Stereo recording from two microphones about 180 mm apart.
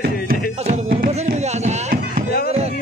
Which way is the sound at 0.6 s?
30° right (ahead or behind).